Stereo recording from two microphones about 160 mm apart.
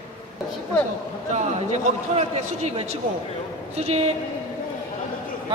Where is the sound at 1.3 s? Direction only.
45° right (ahead or behind).